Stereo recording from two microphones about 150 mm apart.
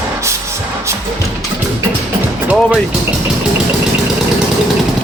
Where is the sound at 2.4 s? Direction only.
10° right (ahead or behind).